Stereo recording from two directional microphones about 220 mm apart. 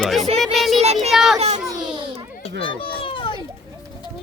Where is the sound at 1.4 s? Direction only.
30° right (ahead or behind).